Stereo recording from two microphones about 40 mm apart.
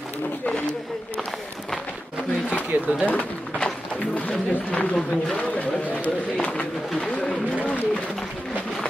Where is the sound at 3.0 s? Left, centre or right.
Left.